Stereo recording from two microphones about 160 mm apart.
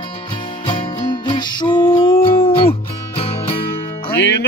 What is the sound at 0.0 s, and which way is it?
Music, 30° left (ahead or behind).